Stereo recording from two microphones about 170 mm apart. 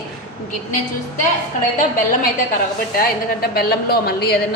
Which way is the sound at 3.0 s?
65° left (ahead or behind).